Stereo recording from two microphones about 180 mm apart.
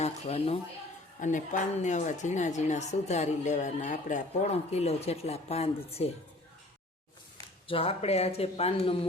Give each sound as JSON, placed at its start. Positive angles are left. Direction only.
{"t": 0.0, "sound": "a woman's voice", "side_deg": 35}
{"t": 7.7, "sound": "a woman's voice", "side_deg": 30}